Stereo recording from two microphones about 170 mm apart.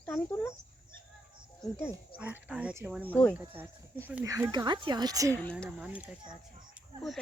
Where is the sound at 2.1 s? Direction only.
10° right (ahead or behind).